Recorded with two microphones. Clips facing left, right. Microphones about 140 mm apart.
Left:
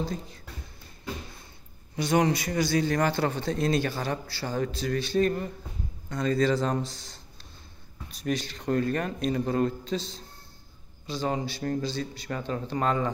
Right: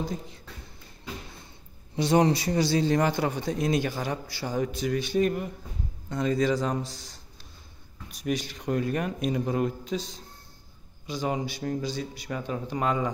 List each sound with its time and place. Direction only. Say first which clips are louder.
0.0 s a man's voice: even; 15° right (ahead or behind)
2.0 s a man's voice: right 2 dB; 30° right (ahead or behind); by 13.1 s 10° right (ahead or behind)